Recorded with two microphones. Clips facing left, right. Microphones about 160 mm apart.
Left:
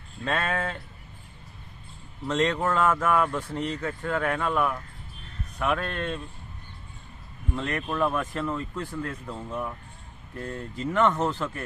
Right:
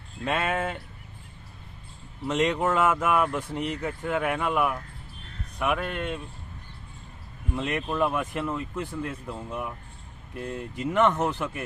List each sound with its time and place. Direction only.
0.3 s speech: 15° right (ahead or behind)
2.2 s speech: 15° right (ahead or behind)
7.5 s speech: 15° right (ahead or behind)